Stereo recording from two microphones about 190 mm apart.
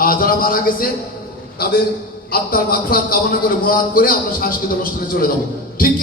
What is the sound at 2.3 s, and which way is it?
A man's voice, 50° left (ahead or behind).